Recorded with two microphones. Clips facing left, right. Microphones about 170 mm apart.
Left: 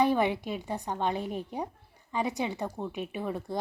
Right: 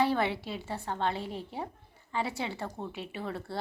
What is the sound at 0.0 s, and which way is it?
A woman's voice, 15° left (ahead or behind).